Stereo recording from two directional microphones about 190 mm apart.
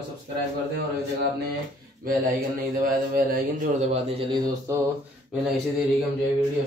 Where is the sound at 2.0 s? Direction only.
45° right (ahead or behind); by 4.8 s 20° right (ahead or behind).